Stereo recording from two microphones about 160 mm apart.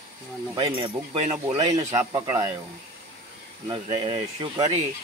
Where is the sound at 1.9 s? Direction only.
20° right (ahead or behind).